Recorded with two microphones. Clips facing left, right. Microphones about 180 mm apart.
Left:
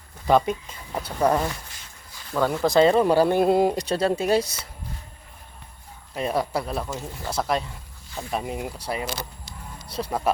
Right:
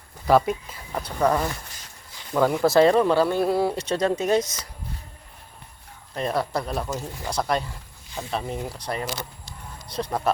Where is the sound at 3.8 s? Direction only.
35° left (ahead or behind).